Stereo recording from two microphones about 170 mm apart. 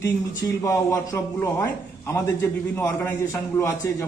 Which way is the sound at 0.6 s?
15° left (ahead or behind).